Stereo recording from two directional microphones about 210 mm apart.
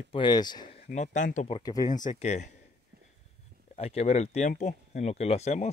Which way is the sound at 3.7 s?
30° left (ahead or behind).